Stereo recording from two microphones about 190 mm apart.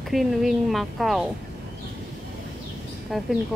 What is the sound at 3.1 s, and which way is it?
Speech, centre (ahead or behind).